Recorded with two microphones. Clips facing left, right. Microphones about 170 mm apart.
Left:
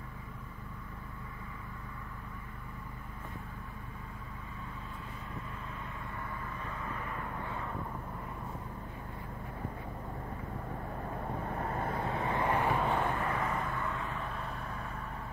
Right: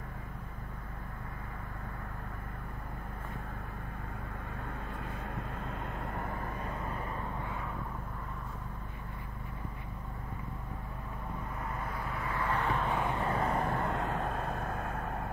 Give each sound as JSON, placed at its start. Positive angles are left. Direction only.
{"t": 6.0, "sound": "vehicle", "side_deg": -55}
{"t": 11.5, "sound": "vehicle", "side_deg": 40}
{"t": 12.7, "sound": "vehicle", "side_deg": 5}
{"t": 13.1, "sound": "vehicle", "side_deg": -25}
{"t": 13.8, "sound": "vehicle", "side_deg": -65}
{"t": 14.1, "sound": "vehicle", "side_deg": -45}